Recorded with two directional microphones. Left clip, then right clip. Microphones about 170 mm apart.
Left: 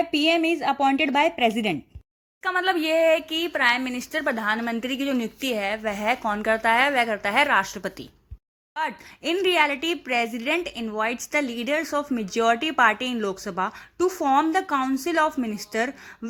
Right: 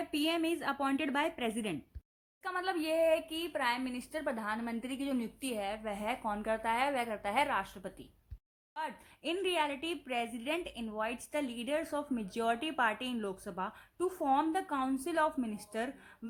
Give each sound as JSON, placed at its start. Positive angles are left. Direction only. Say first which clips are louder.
{"t": 0.1, "sound": "speech", "louder": "left 12 dB", "side_deg": 20}
{"t": 8.7, "sound": "speech", "louder": "left 12 dB", "side_deg": 20}